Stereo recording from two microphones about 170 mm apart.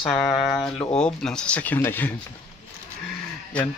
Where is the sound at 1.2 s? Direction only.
5° left (ahead or behind).